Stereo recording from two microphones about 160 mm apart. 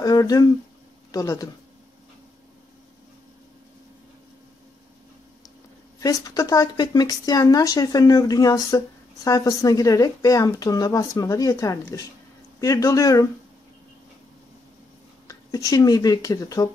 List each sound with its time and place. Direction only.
0.0 s speech: 25° left (ahead or behind)
5.9 s speech: 20° left (ahead or behind)
15.2 s speech: 20° left (ahead or behind)